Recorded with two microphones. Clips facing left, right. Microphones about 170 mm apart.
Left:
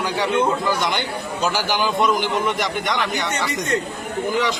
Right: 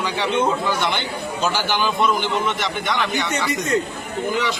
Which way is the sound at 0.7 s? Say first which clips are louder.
Left 1 dB; 10° left (ahead or behind).